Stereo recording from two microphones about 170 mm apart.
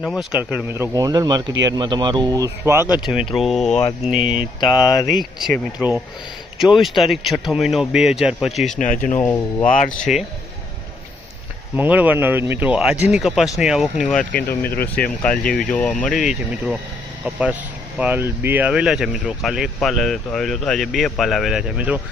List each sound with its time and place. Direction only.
0.0 s speech: centre (ahead or behind); by 2.8 s 20° right (ahead or behind)
2.9 s speech: 5° right (ahead or behind)
4.6 s speech: 25° left (ahead or behind)
6.6 s speech: centre (ahead or behind)
8.8 s speech: 50° left (ahead or behind)
9.1 s speech: 15° left (ahead or behind)
9.6 s speech: 50° left (ahead or behind)
9.9 s speech: centre (ahead or behind)
11.8 s speech: 10° right (ahead or behind)